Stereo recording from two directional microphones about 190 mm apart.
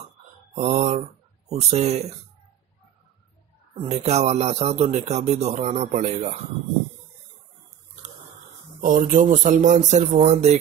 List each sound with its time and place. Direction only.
0.6 s speech: 35° right (ahead or behind)
3.8 s speech: 35° right (ahead or behind)
8.8 s speech: 40° right (ahead or behind)